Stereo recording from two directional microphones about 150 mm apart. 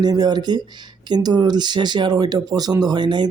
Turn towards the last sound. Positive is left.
turn(degrees=-30)  # may be behind; listen again after turning